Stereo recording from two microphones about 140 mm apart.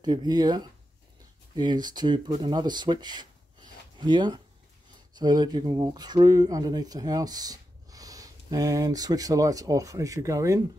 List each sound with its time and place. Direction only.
0.0 s speech: 30° right (ahead or behind)